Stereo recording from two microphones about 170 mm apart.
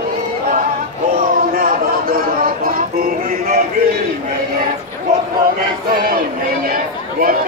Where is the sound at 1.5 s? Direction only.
55° right (ahead or behind).